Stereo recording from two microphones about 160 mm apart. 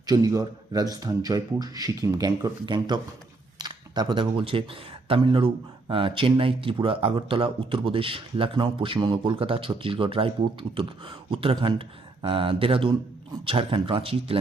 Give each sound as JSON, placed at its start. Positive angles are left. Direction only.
{"t": 0.0, "sound": "speech", "side_deg": -25}